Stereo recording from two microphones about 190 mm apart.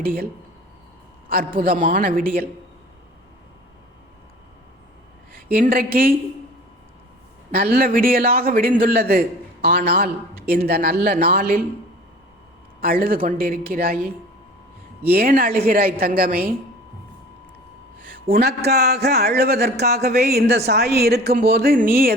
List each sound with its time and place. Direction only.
0.0 s a woman's voice: 50° right (ahead or behind)
1.5 s a woman's voice: 45° right (ahead or behind)
5.5 s a woman's voice: 50° right (ahead or behind)
7.5 s a woman's voice: 55° right (ahead or behind)
12.8 s a woman's voice: 50° right (ahead or behind)
15.1 s a woman's voice: 50° right (ahead or behind)
18.1 s a woman's voice: 50° right (ahead or behind)